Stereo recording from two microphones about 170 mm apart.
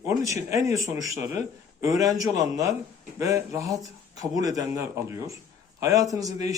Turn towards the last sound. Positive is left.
turn(degrees=-20)  # may be behind; listen again after turning